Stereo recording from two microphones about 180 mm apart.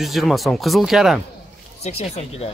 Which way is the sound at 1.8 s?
35° left (ahead or behind).